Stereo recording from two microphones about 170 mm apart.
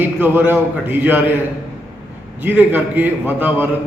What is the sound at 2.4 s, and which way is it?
A man's voice, 10° right (ahead or behind).